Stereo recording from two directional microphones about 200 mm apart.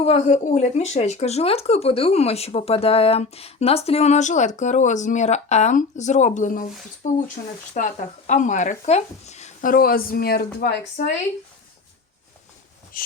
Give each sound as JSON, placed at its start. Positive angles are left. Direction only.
{"t": 0.0, "sound": "speech", "side_deg": 35}
{"t": 12.9, "sound": "speech", "side_deg": 45}